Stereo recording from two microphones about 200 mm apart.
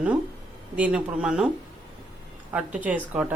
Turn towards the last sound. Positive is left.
turn(degrees=-5)  # may be behind; listen again after turning